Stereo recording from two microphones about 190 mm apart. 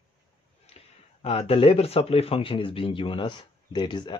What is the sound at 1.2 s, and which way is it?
Speech, 30° left (ahead or behind).